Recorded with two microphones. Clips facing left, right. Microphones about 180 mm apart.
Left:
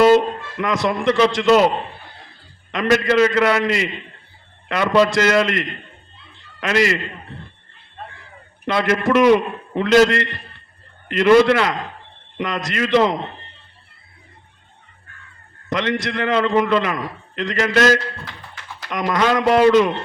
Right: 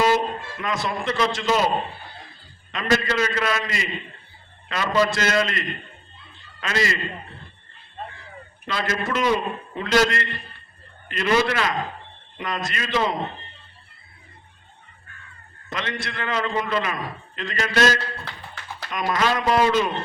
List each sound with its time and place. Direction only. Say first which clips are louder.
0.0 s speech: left 8 dB; 70° left (ahead or behind)
3.0 s speech: left 8 dB; 70° left (ahead or behind)
8.6 s a man's voice: left 8 dB; 65° left (ahead or behind)
15.7 s a man's voice: left 9 dB; 70° left (ahead or behind)